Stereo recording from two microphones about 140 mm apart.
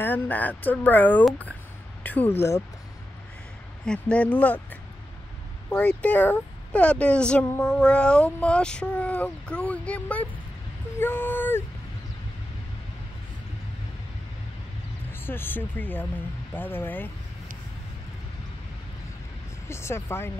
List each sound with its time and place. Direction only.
0.0 s speech: 15° left (ahead or behind)
3.8 s speech: 5° left (ahead or behind)
15.2 s speech: 15° left (ahead or behind)
19.7 s speech: 20° left (ahead or behind)